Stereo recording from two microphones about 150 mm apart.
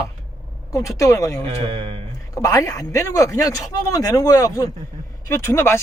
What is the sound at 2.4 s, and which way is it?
A man's voice, 20° left (ahead or behind).